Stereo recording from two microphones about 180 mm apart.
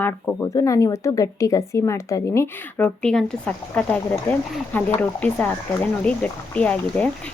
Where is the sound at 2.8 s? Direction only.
5° left (ahead or behind).